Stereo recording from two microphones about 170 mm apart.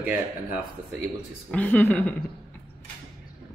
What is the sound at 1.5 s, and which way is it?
Speech, 10° left (ahead or behind).